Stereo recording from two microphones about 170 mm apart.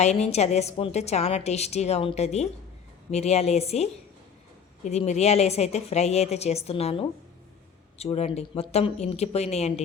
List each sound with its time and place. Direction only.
0.0 s a woman's voice: 40° left (ahead or behind)